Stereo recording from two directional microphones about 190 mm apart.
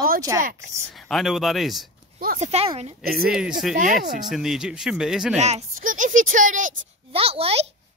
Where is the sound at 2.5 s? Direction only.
35° right (ahead or behind).